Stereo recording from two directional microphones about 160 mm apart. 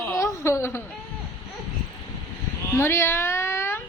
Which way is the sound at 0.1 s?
15° left (ahead or behind).